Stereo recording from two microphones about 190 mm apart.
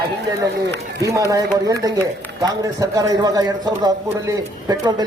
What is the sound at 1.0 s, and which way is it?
A man's voice, 15° right (ahead or behind).